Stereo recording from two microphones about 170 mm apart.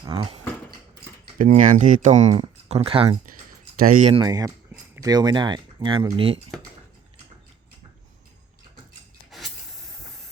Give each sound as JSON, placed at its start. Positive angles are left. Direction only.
{"t": 0.0, "sound": "a sound", "side_deg": -25}
{"t": 1.4, "sound": "speech", "side_deg": -50}
{"t": 3.8, "sound": "speech", "side_deg": -50}
{"t": 4.1, "sound": "speech", "side_deg": -25}